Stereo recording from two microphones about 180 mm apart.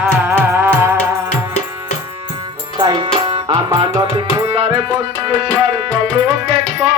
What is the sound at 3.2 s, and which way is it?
Tabla, 30° right (ahead or behind).